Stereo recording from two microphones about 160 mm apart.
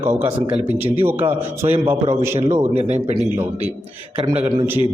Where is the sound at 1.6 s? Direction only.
35° right (ahead or behind).